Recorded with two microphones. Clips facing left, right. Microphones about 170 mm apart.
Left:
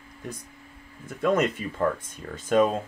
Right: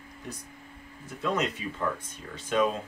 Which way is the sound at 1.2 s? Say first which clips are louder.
Left 6 dB; 50° left (ahead or behind).